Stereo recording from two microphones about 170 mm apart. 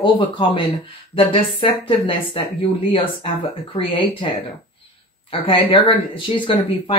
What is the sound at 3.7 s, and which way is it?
Speech, 30° left (ahead or behind).